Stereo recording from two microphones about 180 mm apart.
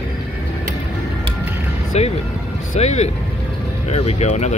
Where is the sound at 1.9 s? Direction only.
35° left (ahead or behind).